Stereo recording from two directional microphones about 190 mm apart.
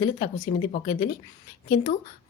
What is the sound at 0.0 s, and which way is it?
Speech, 20° left (ahead or behind).